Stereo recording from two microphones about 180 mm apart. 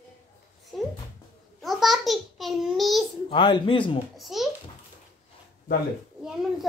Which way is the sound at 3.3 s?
25° left (ahead or behind).